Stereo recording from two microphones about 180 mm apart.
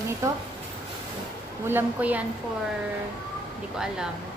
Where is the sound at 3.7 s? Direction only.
5° right (ahead or behind).